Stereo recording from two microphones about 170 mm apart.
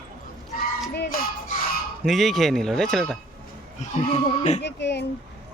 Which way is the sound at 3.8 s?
45° left (ahead or behind).